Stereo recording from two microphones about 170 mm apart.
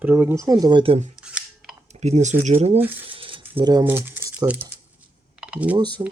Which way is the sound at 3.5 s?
25° right (ahead or behind).